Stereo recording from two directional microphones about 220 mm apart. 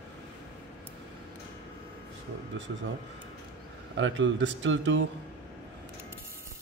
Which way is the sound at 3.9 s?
60° right (ahead or behind).